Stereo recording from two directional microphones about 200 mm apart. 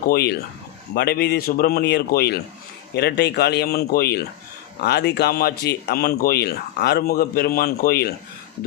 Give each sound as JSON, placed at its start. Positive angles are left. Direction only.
{"t": 0.1, "sound": "speech", "side_deg": 55}